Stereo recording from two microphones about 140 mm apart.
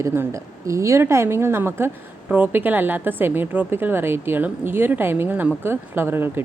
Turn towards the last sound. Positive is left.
turn(degrees=-15)  # may be behind; listen again after turning